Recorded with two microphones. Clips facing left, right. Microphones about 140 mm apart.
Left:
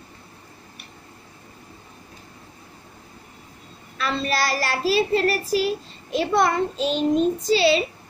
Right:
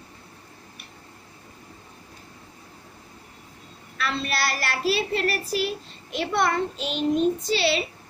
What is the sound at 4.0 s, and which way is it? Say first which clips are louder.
Child singing: left 3 dB; 35° left (ahead or behind).